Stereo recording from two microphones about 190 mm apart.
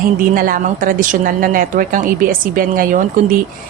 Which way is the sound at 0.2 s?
45° right (ahead or behind).